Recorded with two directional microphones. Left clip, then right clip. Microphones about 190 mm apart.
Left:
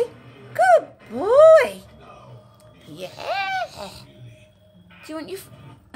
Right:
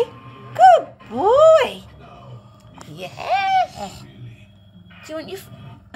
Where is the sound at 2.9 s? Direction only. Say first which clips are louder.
Right 5 dB; 20° left (ahead or behind).